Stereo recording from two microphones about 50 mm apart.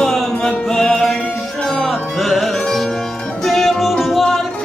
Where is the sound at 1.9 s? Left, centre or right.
Centre.